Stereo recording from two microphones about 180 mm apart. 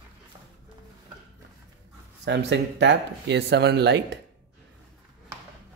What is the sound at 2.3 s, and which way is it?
Speech, 75° right (ahead or behind).